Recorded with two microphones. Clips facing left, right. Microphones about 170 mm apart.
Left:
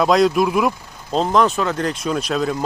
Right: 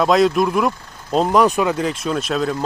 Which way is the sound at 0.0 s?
Centre (ahead or behind).